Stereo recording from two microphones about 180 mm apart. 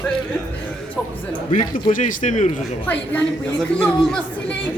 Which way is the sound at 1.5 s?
45° left (ahead or behind).